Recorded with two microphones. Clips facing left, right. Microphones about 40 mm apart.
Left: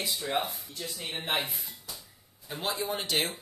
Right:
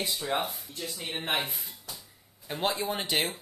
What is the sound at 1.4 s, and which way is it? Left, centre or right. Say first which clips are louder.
Speech: even; centre.